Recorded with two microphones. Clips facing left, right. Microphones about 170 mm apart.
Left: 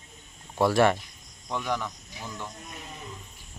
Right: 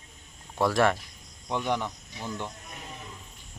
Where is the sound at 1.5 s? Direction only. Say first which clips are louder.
Right 2 dB; 20° right (ahead or behind).